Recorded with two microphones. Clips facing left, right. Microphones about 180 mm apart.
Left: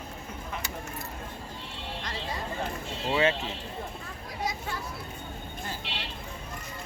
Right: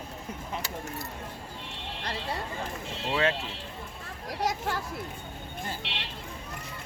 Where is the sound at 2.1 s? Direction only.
65° right (ahead or behind).